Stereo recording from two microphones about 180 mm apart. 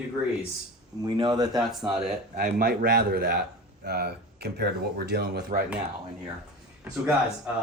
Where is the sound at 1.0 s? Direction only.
25° right (ahead or behind).